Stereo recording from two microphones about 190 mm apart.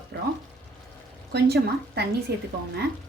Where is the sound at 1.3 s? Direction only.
55° right (ahead or behind).